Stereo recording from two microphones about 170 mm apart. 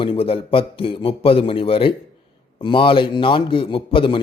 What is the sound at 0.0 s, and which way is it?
A man's voice, 30° left (ahead or behind).